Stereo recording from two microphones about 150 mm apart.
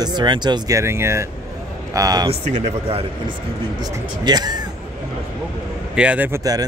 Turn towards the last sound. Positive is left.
turn(degrees=-20)  # may be behind; listen again after turning